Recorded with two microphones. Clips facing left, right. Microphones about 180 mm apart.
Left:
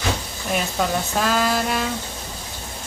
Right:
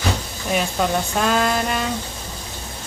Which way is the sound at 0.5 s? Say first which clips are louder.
Right 2 dB; centre (ahead or behind).